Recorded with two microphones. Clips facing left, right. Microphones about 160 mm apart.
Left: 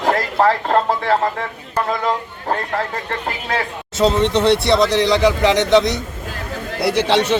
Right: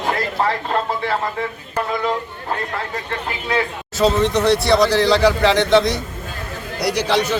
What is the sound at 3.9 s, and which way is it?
Speech, 20° left (ahead or behind).